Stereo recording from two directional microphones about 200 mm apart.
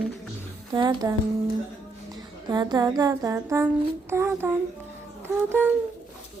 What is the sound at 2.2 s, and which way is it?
Music, 20° right (ahead or behind).